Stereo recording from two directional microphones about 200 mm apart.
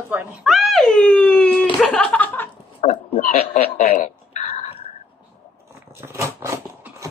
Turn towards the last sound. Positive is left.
turn(degrees=-15)  # may be behind; listen again after turning